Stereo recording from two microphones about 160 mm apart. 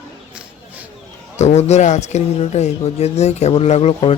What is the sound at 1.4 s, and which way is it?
Speech, 45° left (ahead or behind).